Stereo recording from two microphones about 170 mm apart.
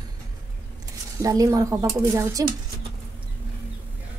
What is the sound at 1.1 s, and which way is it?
A woman's voice, 20° right (ahead or behind).